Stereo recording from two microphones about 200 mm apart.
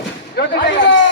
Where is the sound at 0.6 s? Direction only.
65° left (ahead or behind).